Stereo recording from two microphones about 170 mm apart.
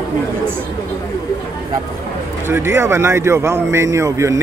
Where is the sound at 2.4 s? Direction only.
15° right (ahead or behind).